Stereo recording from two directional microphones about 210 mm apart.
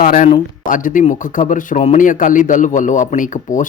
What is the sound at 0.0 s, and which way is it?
A man's voice, 40° left (ahead or behind).